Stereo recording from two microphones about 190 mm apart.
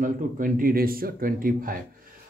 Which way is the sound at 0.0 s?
45° right (ahead or behind).